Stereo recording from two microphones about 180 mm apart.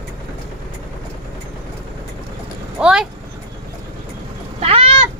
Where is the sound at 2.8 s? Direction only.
5° right (ahead or behind).